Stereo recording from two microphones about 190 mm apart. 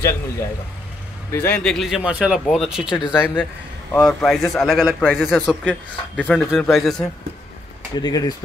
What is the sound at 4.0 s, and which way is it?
Speech, centre (ahead or behind).